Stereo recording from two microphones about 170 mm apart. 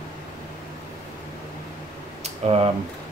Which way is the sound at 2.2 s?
35° right (ahead or behind).